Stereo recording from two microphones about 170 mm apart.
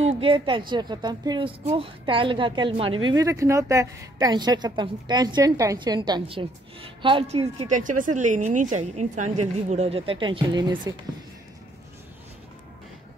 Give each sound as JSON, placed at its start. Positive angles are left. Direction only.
{"t": 0.0, "sound": "a woman's voice", "side_deg": -30}
{"t": 7.6, "sound": "speech", "side_deg": -50}